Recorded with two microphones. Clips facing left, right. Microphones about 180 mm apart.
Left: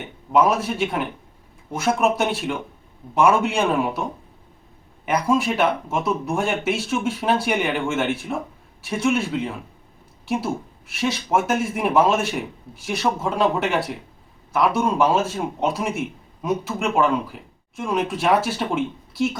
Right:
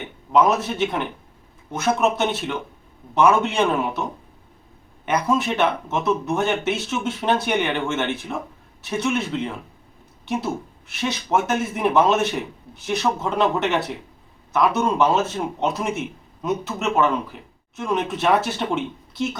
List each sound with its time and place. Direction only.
0.3 s speech: 5° left (ahead or behind)
5.0 s speech: 10° left (ahead or behind)